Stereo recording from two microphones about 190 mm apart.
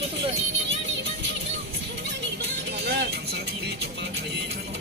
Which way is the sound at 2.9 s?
60° right (ahead or behind).